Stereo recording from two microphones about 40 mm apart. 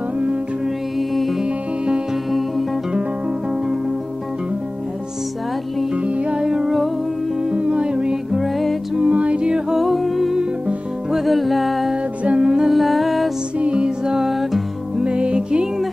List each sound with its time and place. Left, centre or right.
0.9 s music: centre
6.3 s music: centre
8.3 s music: centre
8.9 s music: right
9.7 s humming: centre
11.1 s music: centre
12.2 s music: right
12.6 s humming: centre
13.6 s music: right
14.0 s music: centre
15.0 s music: right